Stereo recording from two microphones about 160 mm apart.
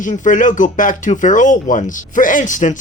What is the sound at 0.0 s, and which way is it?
Speech, 55° left (ahead or behind).